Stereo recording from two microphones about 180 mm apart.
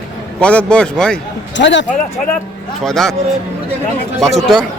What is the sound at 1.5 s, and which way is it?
Speech, 85° left.